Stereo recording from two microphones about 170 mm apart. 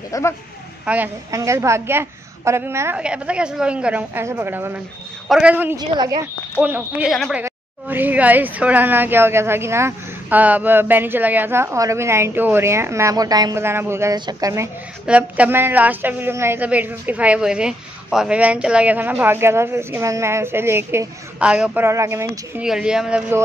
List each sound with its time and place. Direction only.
0.1 s speech: 20° left (ahead or behind)
0.8 s speech: 10° right (ahead or behind)
5.8 s a woman's voice: 25° right (ahead or behind)
6.6 s speech: 10° right (ahead or behind)
15.0 s speech: 10° right (ahead or behind)
22.6 s speech: 5° right (ahead or behind)